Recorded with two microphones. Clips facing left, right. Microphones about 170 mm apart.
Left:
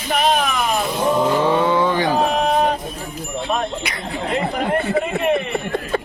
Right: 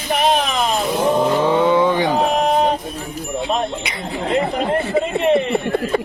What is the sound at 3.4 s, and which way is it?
Speech, 20° right (ahead or behind).